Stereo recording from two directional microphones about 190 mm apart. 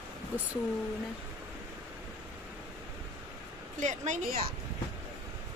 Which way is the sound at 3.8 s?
40° right (ahead or behind).